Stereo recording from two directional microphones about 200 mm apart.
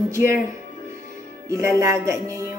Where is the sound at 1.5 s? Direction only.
15° right (ahead or behind).